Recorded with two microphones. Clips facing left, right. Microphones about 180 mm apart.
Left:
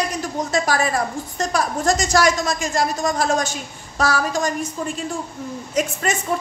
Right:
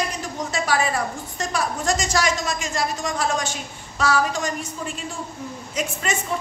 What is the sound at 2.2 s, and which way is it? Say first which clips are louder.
A woman's voice: left 5 dB; 45° left (ahead or behind).